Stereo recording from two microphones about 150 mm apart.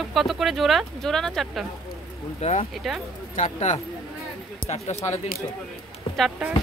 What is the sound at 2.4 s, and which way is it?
Speech, 50° left (ahead or behind).